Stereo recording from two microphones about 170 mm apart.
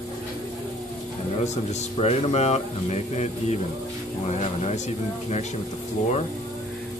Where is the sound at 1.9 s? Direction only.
40° left (ahead or behind).